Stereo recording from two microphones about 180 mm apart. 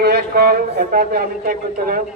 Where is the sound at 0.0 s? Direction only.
60° right (ahead or behind).